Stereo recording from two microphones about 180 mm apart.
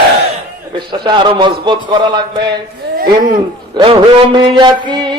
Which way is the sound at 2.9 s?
50° right (ahead or behind).